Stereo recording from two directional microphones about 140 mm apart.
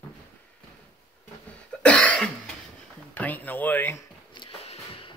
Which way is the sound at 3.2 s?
10° left (ahead or behind).